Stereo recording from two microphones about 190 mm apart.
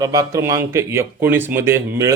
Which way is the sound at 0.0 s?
15° right (ahead or behind).